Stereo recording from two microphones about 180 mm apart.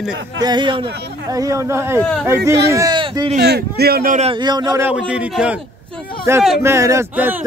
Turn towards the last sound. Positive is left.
turn(degrees=-10)  # may be behind; listen again after turning